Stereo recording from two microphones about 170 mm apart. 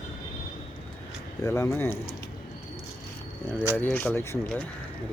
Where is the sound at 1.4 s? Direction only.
15° left (ahead or behind).